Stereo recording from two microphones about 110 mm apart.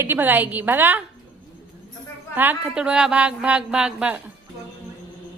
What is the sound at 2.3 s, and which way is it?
Speech, 15° right (ahead or behind).